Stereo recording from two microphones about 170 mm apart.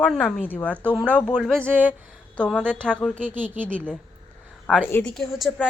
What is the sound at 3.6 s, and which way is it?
A woman's voice, 5° left (ahead or behind).